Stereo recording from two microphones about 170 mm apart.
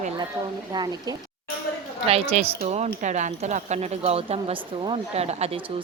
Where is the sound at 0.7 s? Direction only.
25° right (ahead or behind).